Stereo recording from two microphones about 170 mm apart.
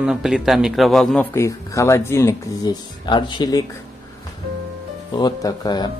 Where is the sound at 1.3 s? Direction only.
15° left (ahead or behind).